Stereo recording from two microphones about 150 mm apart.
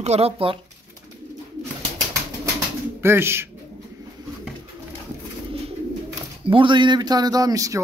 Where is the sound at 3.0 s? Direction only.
15° right (ahead or behind).